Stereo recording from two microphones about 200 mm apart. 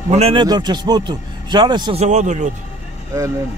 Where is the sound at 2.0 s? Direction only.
35° right (ahead or behind).